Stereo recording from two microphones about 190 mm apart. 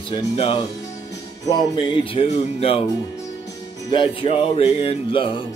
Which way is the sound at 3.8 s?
25° left (ahead or behind).